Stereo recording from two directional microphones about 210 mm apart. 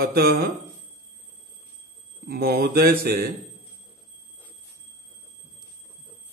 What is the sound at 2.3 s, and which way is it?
A man's voice, 45° right (ahead or behind).